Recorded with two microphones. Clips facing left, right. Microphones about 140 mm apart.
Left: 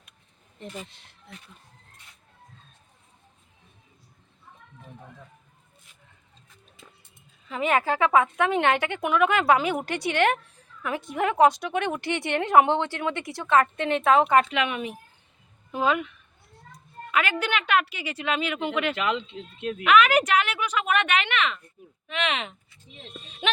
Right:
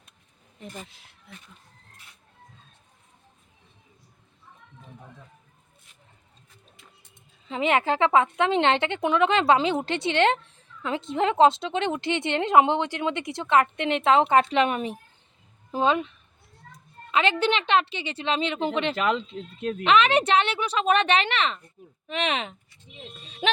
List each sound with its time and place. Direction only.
0.9 s speech: centre (ahead or behind)
7.4 s a woman's voice: 25° right (ahead or behind)